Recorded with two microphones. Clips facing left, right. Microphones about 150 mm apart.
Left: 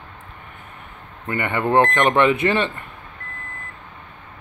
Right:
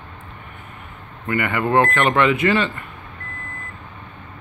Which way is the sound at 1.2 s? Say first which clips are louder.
Right 1 dB; 25° left (ahead or behind).